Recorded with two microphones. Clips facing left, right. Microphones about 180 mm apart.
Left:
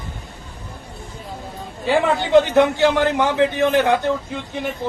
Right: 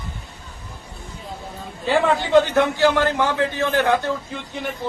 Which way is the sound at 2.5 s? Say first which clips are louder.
Left 2 dB; 20° left (ahead or behind).